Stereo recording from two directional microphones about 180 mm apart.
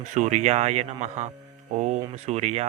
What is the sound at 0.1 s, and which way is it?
Speech, 40° right (ahead or behind).